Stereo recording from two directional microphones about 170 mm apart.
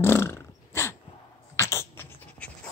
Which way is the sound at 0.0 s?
15° left (ahead or behind).